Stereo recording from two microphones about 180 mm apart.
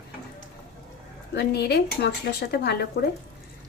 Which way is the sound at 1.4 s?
65° left (ahead or behind).